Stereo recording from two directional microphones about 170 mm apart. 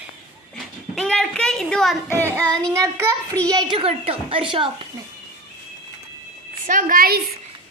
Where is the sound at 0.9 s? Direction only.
5° left (ahead or behind).